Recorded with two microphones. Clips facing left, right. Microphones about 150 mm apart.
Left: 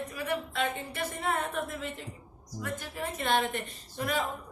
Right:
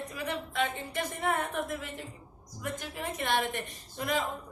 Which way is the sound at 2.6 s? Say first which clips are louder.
Even; 15° right (ahead or behind).